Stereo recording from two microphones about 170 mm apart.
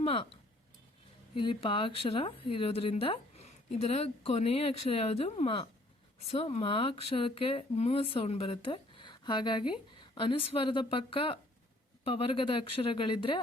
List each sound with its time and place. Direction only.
0.0 s speech: 35° left (ahead or behind)
1.4 s speech: 30° left (ahead or behind)